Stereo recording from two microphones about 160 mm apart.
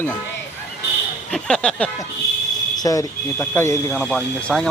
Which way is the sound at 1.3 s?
5° left (ahead or behind).